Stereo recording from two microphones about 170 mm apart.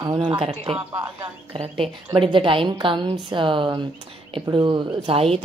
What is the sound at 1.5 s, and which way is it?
A woman's voice, 35° right (ahead or behind).